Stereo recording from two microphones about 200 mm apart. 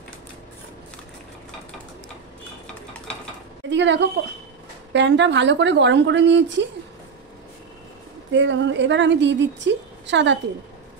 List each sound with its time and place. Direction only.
3.7 s a woman's voice: 65° right (ahead or behind)
8.3 s a woman's voice: 65° right (ahead or behind)